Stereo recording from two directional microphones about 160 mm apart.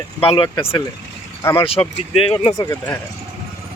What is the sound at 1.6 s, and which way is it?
Speech, 35° left (ahead or behind).